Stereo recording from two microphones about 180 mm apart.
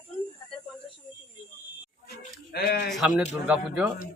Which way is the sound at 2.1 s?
60° left (ahead or behind).